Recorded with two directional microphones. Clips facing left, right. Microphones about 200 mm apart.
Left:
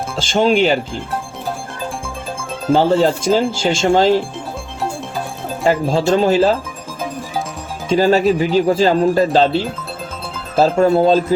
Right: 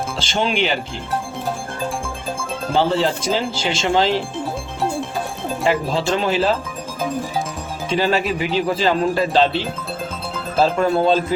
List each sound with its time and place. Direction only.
0.2 s speech: 50° left (ahead or behind)
2.7 s speech: 45° left (ahead or behind)
5.6 s speech: 45° left (ahead or behind)
7.9 s speech: 45° left (ahead or behind)
10.6 s speech: 40° left (ahead or behind)